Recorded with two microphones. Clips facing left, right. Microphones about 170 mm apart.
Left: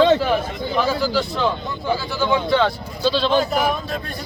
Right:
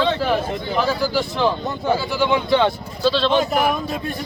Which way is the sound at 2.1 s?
15° right (ahead or behind).